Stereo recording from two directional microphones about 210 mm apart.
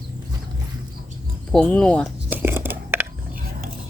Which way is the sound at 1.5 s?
5° left (ahead or behind).